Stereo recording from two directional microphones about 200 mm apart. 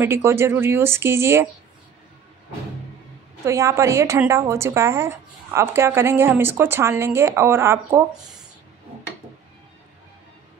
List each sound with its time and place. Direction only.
0.0 s a woman's voice: 10° right (ahead or behind)
3.4 s a woman's voice: 15° right (ahead or behind)